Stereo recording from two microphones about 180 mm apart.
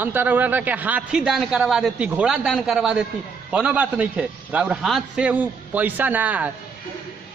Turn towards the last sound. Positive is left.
turn(degrees=-10)  # may be behind; listen again after turning